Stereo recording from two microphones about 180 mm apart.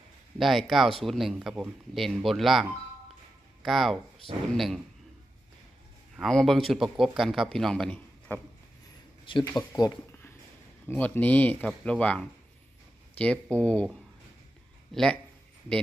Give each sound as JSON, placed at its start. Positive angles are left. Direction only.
{"t": 0.3, "sound": "speech", "side_deg": 0}
{"t": 6.1, "sound": "speech", "side_deg": 0}
{"t": 9.6, "sound": "speech", "side_deg": 20}
{"t": 14.9, "sound": "speech", "side_deg": 5}